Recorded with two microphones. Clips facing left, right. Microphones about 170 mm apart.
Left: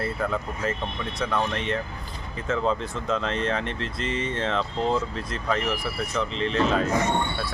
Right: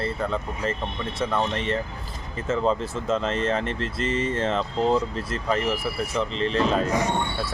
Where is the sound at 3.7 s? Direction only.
40° right (ahead or behind).